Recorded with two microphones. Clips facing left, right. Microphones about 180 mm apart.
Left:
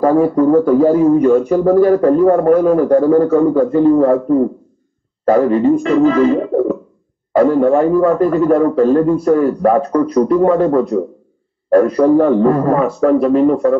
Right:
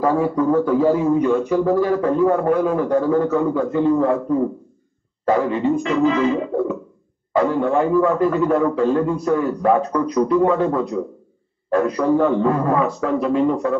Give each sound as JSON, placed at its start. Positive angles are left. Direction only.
{"t": 0.0, "sound": "a man's voice", "side_deg": 45}